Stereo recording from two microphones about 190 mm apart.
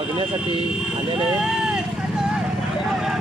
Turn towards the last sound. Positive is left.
turn(degrees=0)  # may be behind; listen again after turning